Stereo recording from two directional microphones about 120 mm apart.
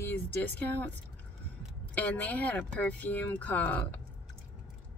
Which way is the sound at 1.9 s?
15° left (ahead or behind).